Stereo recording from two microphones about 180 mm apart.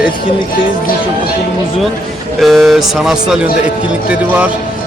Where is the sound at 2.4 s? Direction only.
Centre (ahead or behind).